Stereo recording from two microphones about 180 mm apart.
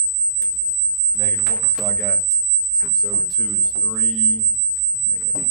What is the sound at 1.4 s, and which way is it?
Speech, centre (ahead or behind).